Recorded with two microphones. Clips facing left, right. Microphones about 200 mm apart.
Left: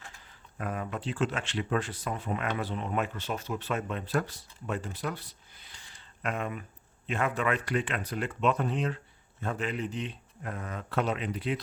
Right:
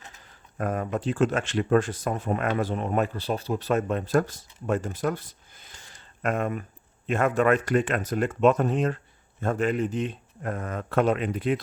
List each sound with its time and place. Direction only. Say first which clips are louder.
0.6 s speech: right 7 dB; 45° right (ahead or behind)